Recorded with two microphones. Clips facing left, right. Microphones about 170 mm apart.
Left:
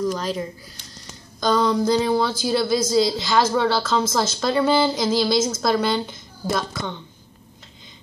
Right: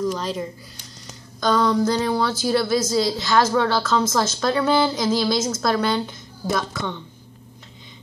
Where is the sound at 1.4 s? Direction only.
Centre (ahead or behind).